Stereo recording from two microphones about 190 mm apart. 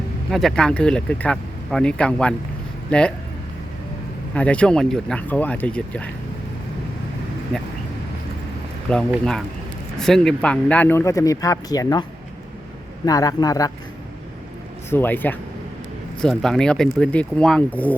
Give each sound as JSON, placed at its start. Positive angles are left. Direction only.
{"t": 0.3, "sound": "speech", "side_deg": 0}
{"t": 4.4, "sound": "speech", "side_deg": 5}
{"t": 8.9, "sound": "speech", "side_deg": 5}
{"t": 13.1, "sound": "a man's voice", "side_deg": 20}
{"t": 14.8, "sound": "speech", "side_deg": 10}